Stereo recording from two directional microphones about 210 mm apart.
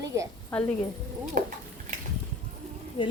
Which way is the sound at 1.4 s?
40° right (ahead or behind).